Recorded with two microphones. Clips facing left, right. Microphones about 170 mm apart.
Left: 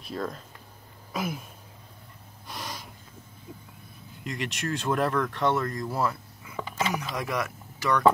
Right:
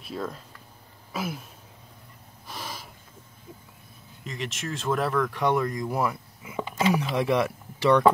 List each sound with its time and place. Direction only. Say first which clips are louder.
0.0 s speech: even; 5° right (ahead or behind)
1.1 s a sound: left 1 dB; centre (ahead or behind)
2.4 s gasp: even; 5° right (ahead or behind)
4.2 s speech: left 2 dB; centre (ahead or behind); by 8.0 s 30° right (ahead or behind)